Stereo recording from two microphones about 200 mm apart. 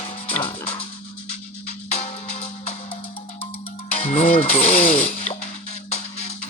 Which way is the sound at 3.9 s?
30° left (ahead or behind).